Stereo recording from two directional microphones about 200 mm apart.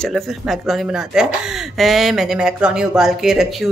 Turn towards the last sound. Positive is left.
turn(degrees=0)  # may be behind; listen again after turning